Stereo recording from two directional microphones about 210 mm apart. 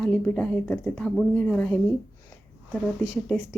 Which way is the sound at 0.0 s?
5° left (ahead or behind).